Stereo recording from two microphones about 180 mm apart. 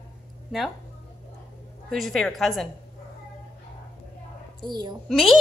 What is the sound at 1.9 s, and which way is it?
Speech, centre (ahead or behind).